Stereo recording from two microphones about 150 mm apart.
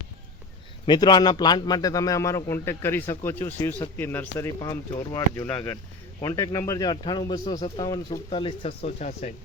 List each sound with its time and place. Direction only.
0.9 s a man's voice: 30° left (ahead or behind)
4.6 s a man's voice: 25° left (ahead or behind); by 9.3 s 50° left (ahead or behind)